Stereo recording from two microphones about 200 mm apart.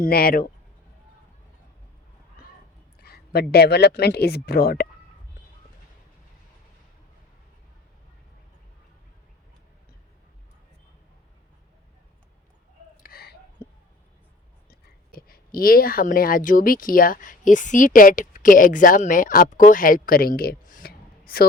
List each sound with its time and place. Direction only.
0.0 s speech: 50° left (ahead or behind)
3.0 s speech: 50° left (ahead or behind)
13.0 s a sound: 50° left (ahead or behind)
15.1 s speech: 45° left (ahead or behind)